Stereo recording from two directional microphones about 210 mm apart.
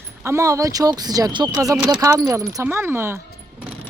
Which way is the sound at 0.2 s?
15° right (ahead or behind).